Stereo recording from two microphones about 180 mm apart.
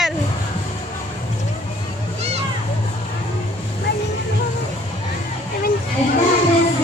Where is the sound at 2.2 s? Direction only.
35° right (ahead or behind).